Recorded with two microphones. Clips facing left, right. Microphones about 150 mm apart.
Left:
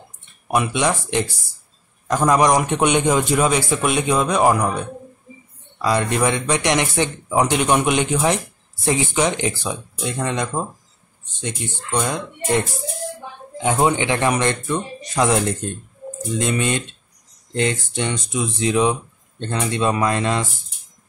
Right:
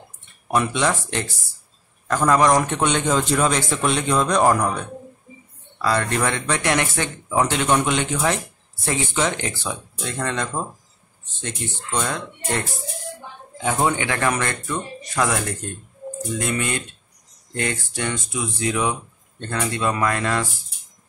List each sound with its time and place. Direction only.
0.5 s a man's voice: 15° left (ahead or behind)